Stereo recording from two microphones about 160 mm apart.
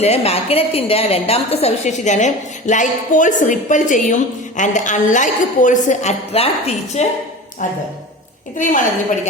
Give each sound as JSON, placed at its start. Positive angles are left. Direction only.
{"t": 0.0, "sound": "a woman's voice", "side_deg": 40}